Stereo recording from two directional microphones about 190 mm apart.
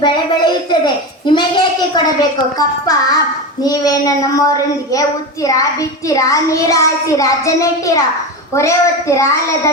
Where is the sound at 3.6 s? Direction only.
20° left (ahead or behind).